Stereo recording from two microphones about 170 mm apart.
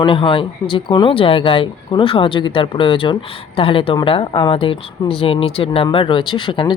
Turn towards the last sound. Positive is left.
turn(degrees=30)  # may be behind; listen again after turning